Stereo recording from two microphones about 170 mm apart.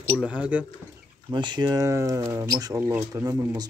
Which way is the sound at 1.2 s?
25° right (ahead or behind).